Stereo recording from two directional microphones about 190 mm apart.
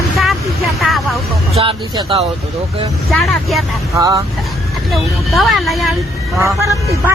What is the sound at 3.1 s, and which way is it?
Speech, centre (ahead or behind).